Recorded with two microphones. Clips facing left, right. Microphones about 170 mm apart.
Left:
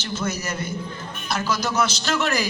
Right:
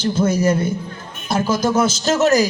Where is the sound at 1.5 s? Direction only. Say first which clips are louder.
Right 6 dB; 50° right (ahead or behind).